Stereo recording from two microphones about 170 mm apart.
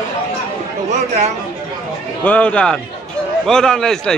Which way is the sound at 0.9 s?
40° right (ahead or behind).